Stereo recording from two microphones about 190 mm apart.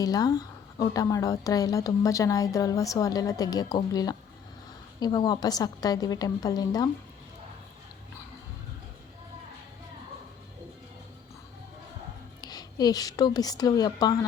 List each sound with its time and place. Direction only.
0.0 s a woman's voice: 20° left (ahead or behind)
12.4 s a woman's voice: 20° left (ahead or behind)